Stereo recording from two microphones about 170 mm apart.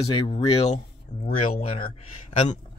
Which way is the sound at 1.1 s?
50° left (ahead or behind).